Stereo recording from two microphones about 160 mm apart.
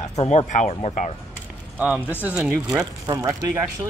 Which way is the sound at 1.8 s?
10° right (ahead or behind).